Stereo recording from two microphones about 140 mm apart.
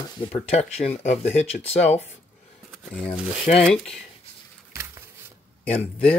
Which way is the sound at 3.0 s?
50° left (ahead or behind).